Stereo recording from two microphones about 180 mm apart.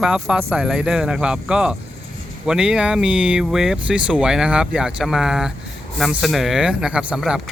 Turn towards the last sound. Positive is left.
turn(degrees=-5)  # may be behind; listen again after turning